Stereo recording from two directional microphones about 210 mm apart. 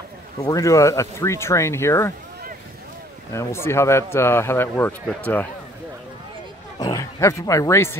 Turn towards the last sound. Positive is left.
turn(degrees=15)  # may be behind; listen again after turning